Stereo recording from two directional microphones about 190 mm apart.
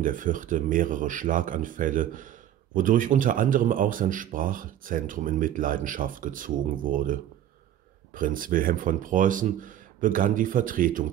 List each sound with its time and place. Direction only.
0.0 s speech: 45° right (ahead or behind)